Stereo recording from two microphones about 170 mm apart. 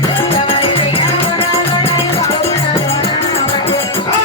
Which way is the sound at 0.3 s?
30° left (ahead or behind).